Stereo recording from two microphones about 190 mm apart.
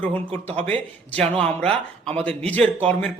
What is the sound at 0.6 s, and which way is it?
A man's voice, 5° left (ahead or behind).